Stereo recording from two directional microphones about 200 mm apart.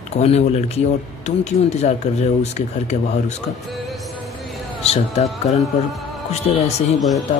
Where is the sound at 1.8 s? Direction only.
35° left (ahead or behind).